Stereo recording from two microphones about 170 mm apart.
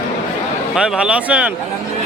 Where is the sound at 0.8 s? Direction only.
5° right (ahead or behind).